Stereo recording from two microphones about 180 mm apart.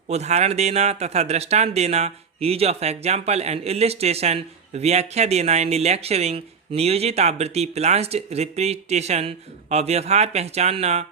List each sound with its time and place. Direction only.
0.1 s a man's voice: 35° right (ahead or behind)